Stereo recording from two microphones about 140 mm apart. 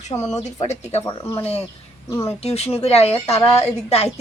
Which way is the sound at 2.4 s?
45° left (ahead or behind).